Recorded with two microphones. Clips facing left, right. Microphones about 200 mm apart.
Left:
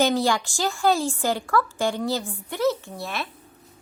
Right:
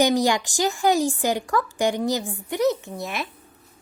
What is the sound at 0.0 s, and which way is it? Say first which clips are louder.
A woman's voice: right 2 dB; 15° right (ahead or behind).